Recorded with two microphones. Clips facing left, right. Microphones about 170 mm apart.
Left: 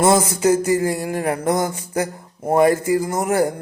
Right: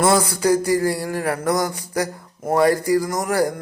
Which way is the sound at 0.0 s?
20° left (ahead or behind).